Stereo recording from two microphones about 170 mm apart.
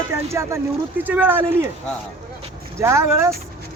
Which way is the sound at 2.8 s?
15° right (ahead or behind).